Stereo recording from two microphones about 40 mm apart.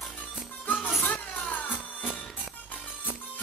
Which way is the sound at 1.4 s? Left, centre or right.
Left.